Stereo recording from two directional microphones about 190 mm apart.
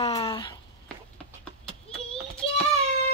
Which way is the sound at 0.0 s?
30° left (ahead or behind).